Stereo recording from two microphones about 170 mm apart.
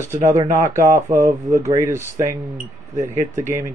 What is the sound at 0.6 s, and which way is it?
A man's voice, 15° right (ahead or behind).